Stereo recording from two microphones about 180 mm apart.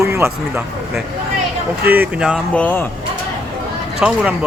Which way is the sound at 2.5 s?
10° left (ahead or behind).